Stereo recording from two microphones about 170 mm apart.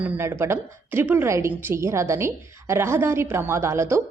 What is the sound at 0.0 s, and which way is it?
A woman's voice, 10° right (ahead or behind).